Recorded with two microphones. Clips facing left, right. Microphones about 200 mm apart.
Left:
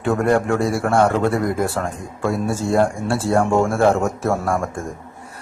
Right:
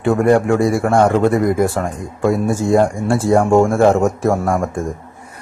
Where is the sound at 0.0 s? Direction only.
10° right (ahead or behind).